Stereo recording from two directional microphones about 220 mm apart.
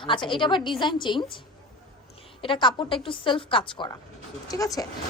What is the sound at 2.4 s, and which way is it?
A woman's voice, 20° left (ahead or behind).